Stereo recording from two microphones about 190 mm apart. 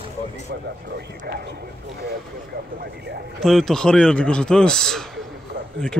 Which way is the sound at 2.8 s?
55° right (ahead or behind).